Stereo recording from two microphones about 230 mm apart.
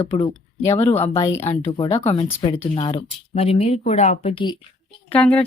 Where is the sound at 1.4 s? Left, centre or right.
Left.